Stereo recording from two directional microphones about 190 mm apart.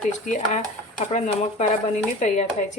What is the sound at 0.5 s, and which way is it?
Speech, 40° left (ahead or behind).